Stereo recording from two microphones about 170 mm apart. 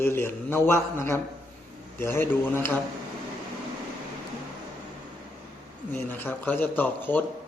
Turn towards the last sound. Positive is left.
turn(degrees=10)  # may be behind; listen again after turning